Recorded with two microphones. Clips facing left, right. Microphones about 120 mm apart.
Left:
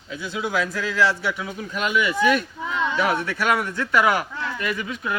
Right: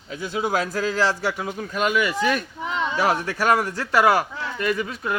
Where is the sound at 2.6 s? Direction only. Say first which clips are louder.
Right 1 dB; 20° right (ahead or behind).